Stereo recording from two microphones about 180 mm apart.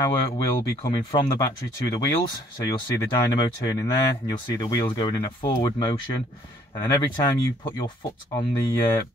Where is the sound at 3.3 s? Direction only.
20° left (ahead or behind).